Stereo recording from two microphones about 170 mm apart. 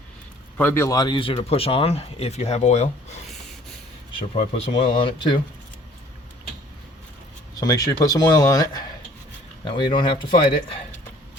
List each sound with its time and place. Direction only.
0.5 s speech: 10° left (ahead or behind); by 2.9 s 40° left (ahead or behind)
4.4 s speech: 35° left (ahead or behind)
7.6 s speech: 20° left (ahead or behind)